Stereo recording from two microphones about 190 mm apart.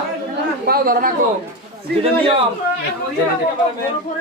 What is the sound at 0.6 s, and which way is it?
Speech, 50° right (ahead or behind).